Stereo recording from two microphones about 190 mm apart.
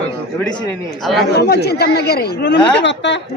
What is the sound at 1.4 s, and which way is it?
Speech, 60° left (ahead or behind).